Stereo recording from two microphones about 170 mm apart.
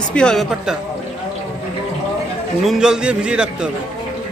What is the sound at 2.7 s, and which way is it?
Speech, 5° right (ahead or behind).